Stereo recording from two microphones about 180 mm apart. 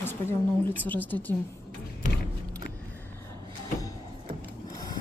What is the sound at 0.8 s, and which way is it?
Speech, 10° left (ahead or behind).